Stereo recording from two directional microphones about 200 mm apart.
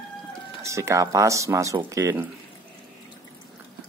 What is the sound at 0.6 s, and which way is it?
Speech, 15° right (ahead or behind).